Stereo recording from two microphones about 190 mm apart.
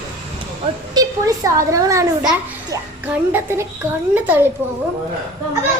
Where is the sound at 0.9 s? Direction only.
20° right (ahead or behind).